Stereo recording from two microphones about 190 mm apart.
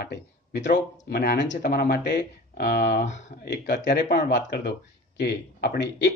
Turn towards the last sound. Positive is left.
turn(degrees=60)  # may be behind; listen again after turning